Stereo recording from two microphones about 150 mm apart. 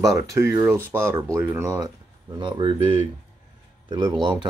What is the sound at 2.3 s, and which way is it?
Speech, 30° right (ahead or behind).